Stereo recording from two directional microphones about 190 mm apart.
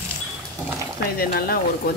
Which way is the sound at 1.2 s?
50° left (ahead or behind).